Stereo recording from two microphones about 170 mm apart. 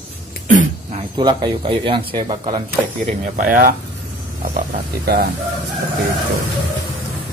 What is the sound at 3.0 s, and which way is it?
Speech, 50° right (ahead or behind).